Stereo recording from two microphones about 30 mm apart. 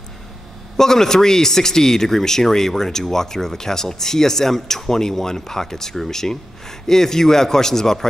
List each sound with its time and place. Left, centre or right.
0.7 s speech: centre